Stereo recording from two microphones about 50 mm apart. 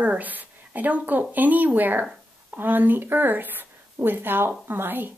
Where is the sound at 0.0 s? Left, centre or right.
Right.